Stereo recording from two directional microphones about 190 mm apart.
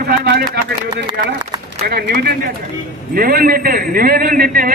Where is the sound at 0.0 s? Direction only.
55° right (ahead or behind).